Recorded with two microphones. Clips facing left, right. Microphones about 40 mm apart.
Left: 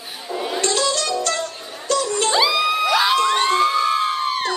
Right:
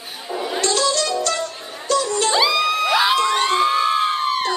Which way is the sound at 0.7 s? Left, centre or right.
Left.